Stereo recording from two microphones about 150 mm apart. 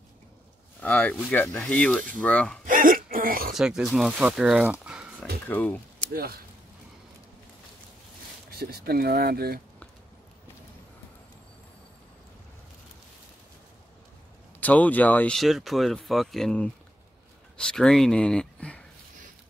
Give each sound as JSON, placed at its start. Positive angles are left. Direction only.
{"t": 0.7, "sound": "speech", "side_deg": 10}
{"t": 2.6, "sound": "a sound", "side_deg": -65}
{"t": 3.5, "sound": "speech", "side_deg": -5}
{"t": 5.5, "sound": "speech", "side_deg": 10}
{"t": 8.5, "sound": "speech", "side_deg": -90}
{"t": 14.6, "sound": "speech", "side_deg": 10}